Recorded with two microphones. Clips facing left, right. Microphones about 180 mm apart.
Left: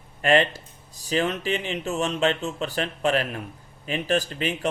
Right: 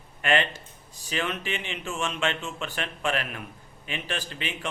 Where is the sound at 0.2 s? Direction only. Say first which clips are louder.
Left 5 dB; 35° left (ahead or behind).